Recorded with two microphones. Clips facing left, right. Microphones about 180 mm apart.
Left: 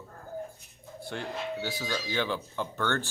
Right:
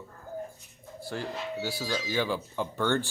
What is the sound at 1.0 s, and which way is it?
Speech, 5° right (ahead or behind).